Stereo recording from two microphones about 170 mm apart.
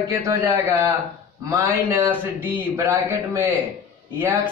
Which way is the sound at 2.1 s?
15° right (ahead or behind).